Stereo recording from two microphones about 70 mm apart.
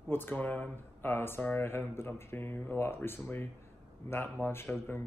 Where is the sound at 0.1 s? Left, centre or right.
Left.